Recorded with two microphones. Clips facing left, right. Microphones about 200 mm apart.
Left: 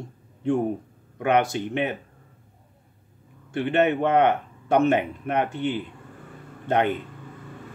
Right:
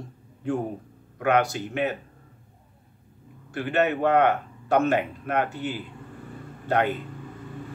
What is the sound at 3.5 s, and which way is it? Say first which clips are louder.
Speech: left 3 dB; 20° left (ahead or behind).